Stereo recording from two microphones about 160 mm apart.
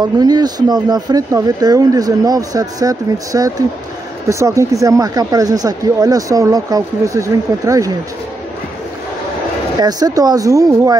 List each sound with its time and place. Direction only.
0.0 s speech: 25° right (ahead or behind)
9.8 s speech: 25° right (ahead or behind)